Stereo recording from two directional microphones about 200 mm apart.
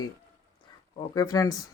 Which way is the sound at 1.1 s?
15° left (ahead or behind).